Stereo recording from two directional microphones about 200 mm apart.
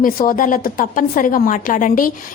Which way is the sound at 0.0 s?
45° left (ahead or behind).